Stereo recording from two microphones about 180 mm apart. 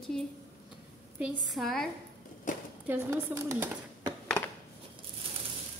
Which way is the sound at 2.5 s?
45° left (ahead or behind).